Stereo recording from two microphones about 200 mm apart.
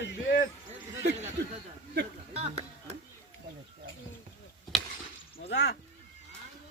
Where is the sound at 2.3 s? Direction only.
30° right (ahead or behind).